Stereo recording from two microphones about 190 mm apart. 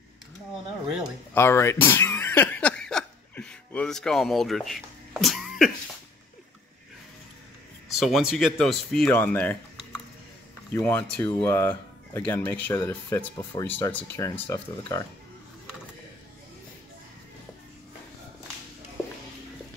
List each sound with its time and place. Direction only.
1.3 s a sound: 10° left (ahead or behind)
7.9 s speech: centre (ahead or behind)
10.7 s speech: 10° left (ahead or behind)